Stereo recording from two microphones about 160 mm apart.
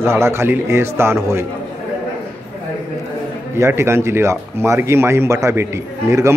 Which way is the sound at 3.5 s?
15° right (ahead or behind).